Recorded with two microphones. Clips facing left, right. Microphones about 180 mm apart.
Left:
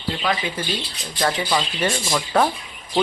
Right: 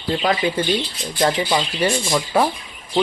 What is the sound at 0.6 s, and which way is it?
Speech, 30° right (ahead or behind).